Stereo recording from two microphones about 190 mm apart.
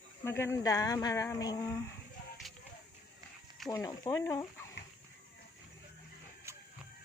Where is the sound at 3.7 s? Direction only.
15° left (ahead or behind).